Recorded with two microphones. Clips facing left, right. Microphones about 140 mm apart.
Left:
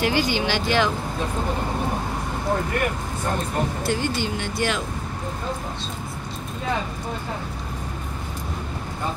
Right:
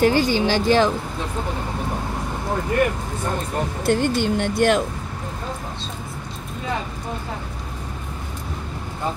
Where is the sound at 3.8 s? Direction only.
55° right (ahead or behind).